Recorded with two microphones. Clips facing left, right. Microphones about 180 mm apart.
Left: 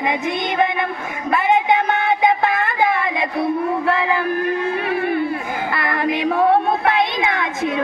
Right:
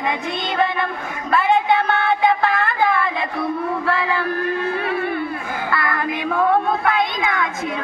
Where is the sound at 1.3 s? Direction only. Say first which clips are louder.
Even; 15° left (ahead or behind).